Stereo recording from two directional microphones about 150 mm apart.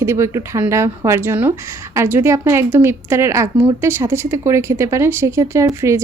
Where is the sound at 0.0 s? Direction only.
20° right (ahead or behind).